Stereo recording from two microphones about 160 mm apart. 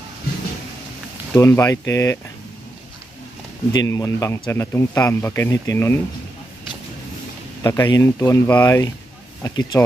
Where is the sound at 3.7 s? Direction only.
20° left (ahead or behind).